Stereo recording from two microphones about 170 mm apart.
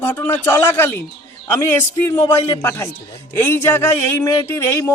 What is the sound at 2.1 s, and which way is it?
Speech, 15° left (ahead or behind).